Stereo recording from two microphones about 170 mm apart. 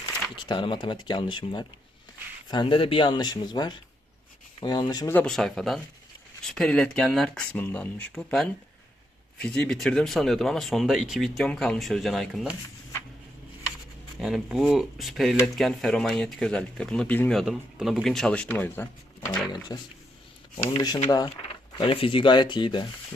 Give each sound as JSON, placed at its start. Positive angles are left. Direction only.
{"t": 0.3, "sound": "speech", "side_deg": 30}
{"t": 5.1, "sound": "speech", "side_deg": 5}
{"t": 14.2, "sound": "speech", "side_deg": 0}
{"t": 19.7, "sound": "speech", "side_deg": 25}